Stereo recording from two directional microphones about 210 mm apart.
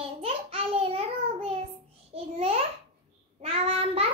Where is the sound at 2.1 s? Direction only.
30° right (ahead or behind).